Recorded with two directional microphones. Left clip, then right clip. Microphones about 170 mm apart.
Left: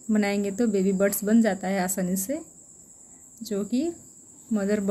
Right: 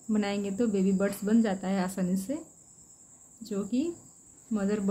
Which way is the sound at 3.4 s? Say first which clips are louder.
Left 4 dB; 15° left (ahead or behind).